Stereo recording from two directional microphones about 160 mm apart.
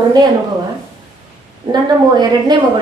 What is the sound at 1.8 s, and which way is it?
Speech, 25° right (ahead or behind).